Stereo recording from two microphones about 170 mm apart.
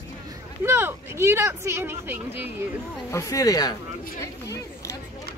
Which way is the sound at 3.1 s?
15° left (ahead or behind).